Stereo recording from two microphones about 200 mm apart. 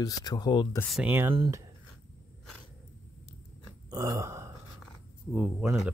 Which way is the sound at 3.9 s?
15° right (ahead or behind).